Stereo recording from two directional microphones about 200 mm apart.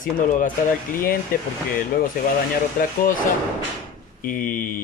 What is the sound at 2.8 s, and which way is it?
Speech, 45° left (ahead or behind).